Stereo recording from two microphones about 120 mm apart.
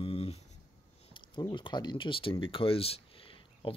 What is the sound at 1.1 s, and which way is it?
Speech, 40° left (ahead or behind).